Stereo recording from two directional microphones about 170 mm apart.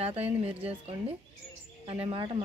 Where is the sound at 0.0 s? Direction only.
35° right (ahead or behind).